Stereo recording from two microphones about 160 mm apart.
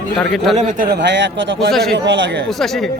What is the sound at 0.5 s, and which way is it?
Speech, 55° right (ahead or behind).